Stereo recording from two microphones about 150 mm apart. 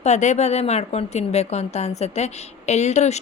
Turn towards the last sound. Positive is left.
turn(degrees=45)  # may be behind; listen again after turning